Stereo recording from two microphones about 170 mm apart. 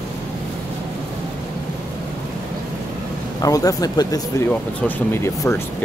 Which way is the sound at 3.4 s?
20° left (ahead or behind).